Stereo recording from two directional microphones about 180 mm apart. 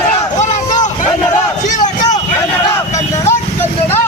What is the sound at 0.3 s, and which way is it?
Vehicle, 40° left (ahead or behind).